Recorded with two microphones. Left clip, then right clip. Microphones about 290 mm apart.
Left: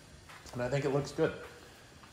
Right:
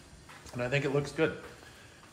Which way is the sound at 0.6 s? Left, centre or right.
Centre.